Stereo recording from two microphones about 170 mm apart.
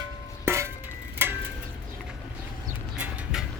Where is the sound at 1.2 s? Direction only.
10° right (ahead or behind).